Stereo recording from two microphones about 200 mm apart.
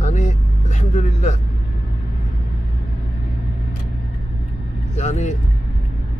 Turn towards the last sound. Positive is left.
turn(degrees=35)  # may be behind; listen again after turning